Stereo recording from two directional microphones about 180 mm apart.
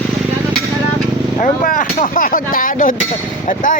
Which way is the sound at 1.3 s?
45° left (ahead or behind).